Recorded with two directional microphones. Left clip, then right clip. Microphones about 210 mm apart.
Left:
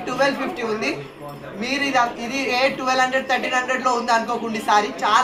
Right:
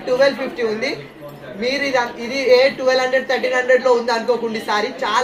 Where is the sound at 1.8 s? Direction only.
15° left (ahead or behind).